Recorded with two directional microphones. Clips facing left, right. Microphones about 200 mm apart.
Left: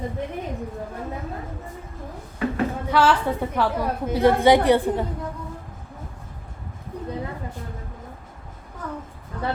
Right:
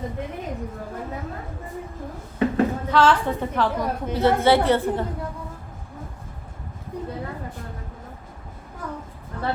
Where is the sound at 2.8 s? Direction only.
10° left (ahead or behind).